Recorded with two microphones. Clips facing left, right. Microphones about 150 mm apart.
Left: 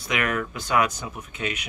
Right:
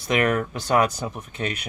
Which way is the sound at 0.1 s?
35° right (ahead or behind).